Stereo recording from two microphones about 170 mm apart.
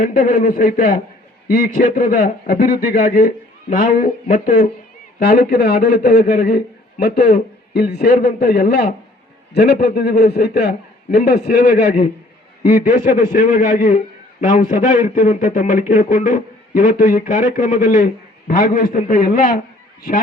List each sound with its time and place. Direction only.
0.0 s a man's voice: 55° left (ahead or behind)
5.2 s a man's voice: 65° left (ahead or behind)